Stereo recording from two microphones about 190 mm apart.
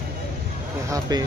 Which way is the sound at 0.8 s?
15° right (ahead or behind).